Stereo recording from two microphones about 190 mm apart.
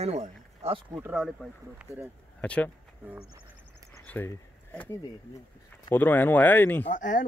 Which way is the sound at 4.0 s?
10° left (ahead or behind).